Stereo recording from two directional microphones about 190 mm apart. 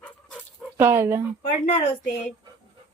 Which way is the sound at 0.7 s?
15° right (ahead or behind).